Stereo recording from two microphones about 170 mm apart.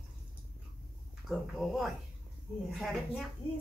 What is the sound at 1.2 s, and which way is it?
Speech, centre (ahead or behind).